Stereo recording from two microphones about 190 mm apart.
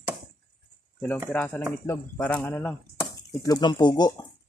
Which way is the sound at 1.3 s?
5° left (ahead or behind).